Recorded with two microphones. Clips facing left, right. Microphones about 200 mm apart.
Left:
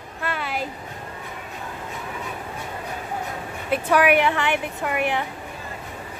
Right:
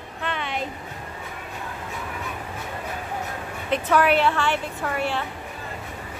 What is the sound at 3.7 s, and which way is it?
A woman's voice, 10° left (ahead or behind).